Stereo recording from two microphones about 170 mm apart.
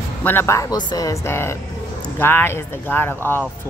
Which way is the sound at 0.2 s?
10° left (ahead or behind).